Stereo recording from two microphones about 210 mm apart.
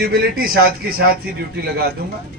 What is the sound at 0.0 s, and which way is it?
A man's voice, 45° right (ahead or behind).